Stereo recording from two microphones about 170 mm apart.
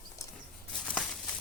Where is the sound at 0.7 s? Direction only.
5° left (ahead or behind).